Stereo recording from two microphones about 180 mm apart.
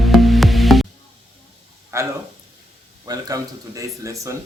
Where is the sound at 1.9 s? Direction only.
15° right (ahead or behind).